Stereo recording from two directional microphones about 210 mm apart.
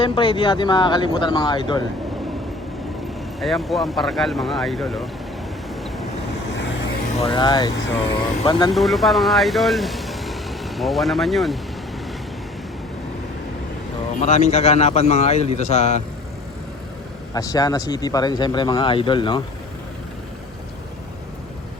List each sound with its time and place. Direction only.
0.0 s speech: 25° left (ahead or behind)
3.4 s speech: centre (ahead or behind)
7.2 s speech: 25° left (ahead or behind)
8.7 s speech: centre (ahead or behind)
14.2 s a man's voice: 35° left (ahead or behind)
17.3 s speech: 15° left (ahead or behind)